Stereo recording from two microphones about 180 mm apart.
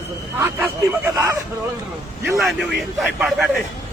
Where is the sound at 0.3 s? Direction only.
15° right (ahead or behind).